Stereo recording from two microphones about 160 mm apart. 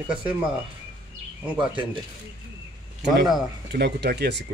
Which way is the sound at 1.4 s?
10° right (ahead or behind).